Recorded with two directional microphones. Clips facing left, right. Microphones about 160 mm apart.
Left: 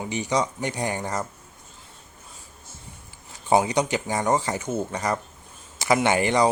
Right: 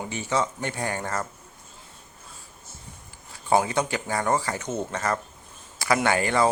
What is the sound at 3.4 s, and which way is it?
Speech, 20° left (ahead or behind).